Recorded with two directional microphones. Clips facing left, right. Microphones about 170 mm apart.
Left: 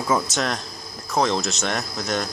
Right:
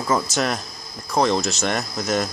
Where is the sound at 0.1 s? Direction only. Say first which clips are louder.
Right 1 dB; centre (ahead or behind).